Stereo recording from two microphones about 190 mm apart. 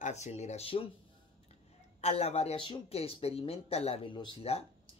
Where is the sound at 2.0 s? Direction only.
35° left (ahead or behind).